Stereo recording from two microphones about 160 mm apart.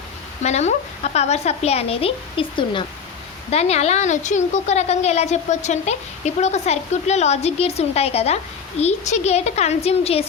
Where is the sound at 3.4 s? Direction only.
40° left (ahead or behind).